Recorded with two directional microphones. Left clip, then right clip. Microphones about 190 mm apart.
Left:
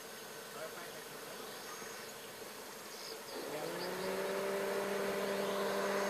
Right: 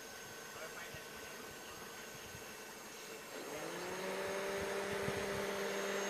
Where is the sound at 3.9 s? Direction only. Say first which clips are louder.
Left 2 dB; 10° right (ahead or behind).